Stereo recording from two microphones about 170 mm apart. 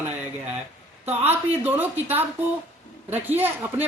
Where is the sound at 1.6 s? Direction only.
10° right (ahead or behind).